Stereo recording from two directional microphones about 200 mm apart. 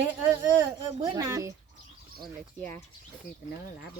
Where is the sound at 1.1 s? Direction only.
20° right (ahead or behind).